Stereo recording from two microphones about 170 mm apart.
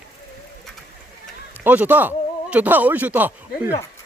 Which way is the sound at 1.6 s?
10° right (ahead or behind).